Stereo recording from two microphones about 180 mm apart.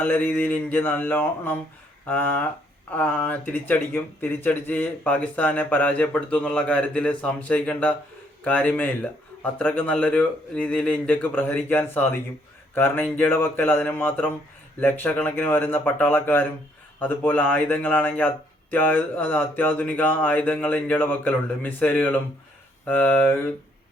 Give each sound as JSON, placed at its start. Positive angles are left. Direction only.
{"t": 0.0, "sound": "speech", "side_deg": 10}